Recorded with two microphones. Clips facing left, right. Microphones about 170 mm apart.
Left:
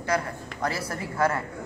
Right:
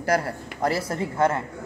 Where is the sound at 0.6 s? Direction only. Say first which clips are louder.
Right 5 dB; 25° right (ahead or behind).